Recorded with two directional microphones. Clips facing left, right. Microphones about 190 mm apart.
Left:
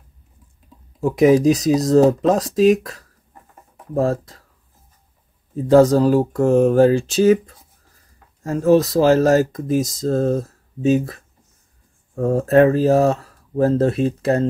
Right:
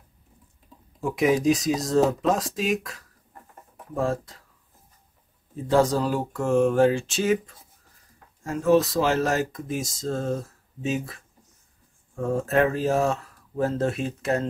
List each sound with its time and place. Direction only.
1.1 s speech: 40° left (ahead or behind)
5.7 s speech: 40° left (ahead or behind)